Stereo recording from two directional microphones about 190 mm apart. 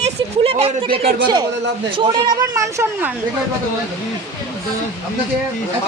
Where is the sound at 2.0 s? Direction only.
20° right (ahead or behind).